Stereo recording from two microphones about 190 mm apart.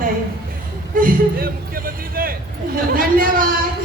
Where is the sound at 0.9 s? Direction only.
50° right (ahead or behind).